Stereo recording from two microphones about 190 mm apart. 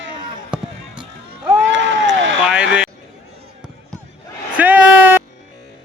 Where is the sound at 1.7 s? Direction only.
75° right (ahead or behind).